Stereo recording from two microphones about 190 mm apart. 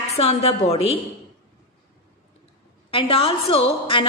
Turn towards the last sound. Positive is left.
turn(degrees=30)  # may be behind; listen again after turning